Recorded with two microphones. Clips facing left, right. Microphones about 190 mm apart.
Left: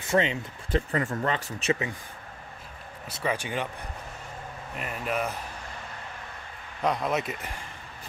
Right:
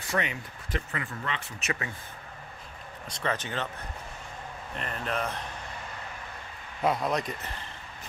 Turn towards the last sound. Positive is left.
turn(degrees=5)  # may be behind; listen again after turning